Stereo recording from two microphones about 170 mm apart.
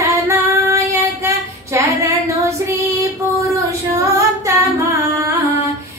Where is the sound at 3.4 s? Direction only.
15° right (ahead or behind).